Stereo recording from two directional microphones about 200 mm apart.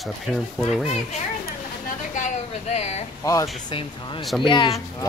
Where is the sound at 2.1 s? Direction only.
35° left (ahead or behind).